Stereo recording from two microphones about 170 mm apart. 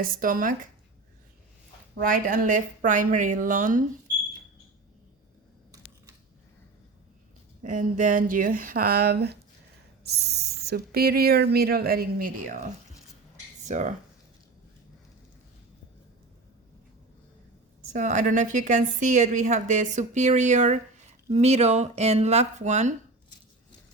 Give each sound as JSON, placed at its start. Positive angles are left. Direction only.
{"t": 0.0, "sound": "speech", "side_deg": -55}
{"t": 2.0, "sound": "a woman's voice", "side_deg": -55}
{"t": 7.6, "sound": "speech", "side_deg": -50}
{"t": 13.7, "sound": "speech", "side_deg": -45}
{"t": 17.9, "sound": "a woman's voice", "side_deg": -45}